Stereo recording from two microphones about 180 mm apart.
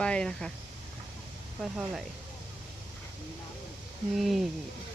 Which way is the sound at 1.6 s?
5° right (ahead or behind).